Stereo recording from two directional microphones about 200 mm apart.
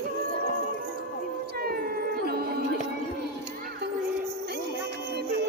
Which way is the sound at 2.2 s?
50° right (ahead or behind).